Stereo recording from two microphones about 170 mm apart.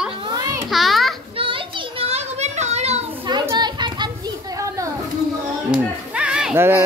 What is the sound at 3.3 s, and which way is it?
Children playing, 25° right (ahead or behind).